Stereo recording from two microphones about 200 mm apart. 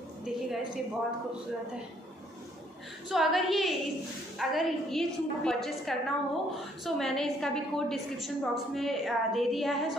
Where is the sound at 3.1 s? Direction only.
Centre (ahead or behind).